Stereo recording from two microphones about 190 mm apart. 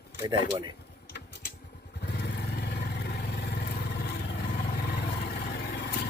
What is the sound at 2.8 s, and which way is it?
Vehicle, 60° left (ahead or behind).